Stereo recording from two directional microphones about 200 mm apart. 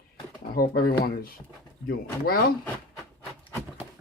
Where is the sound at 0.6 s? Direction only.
50° left (ahead or behind).